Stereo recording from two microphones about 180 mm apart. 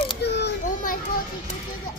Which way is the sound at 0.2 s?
70° left (ahead or behind).